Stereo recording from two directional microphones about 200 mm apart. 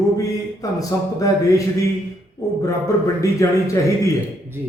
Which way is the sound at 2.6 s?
15° left (ahead or behind).